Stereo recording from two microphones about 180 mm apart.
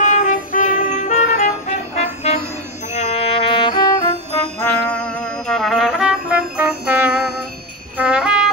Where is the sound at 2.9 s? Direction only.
35° left (ahead or behind).